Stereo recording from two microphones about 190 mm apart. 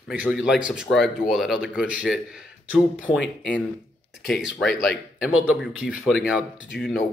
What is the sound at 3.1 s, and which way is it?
Speech, 25° left (ahead or behind).